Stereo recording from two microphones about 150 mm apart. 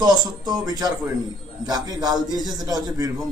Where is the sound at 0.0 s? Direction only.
25° right (ahead or behind).